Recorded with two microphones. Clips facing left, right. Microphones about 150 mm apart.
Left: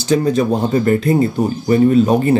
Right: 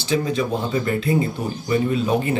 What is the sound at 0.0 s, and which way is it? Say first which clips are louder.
Speech: left 7 dB; 40° left (ahead or behind).